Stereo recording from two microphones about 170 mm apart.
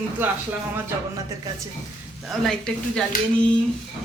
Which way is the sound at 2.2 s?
5° left (ahead or behind).